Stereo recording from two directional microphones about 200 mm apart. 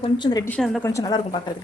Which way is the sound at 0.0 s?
20° left (ahead or behind).